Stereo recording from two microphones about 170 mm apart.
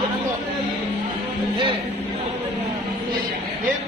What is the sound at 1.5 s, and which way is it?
Speech, 30° right (ahead or behind).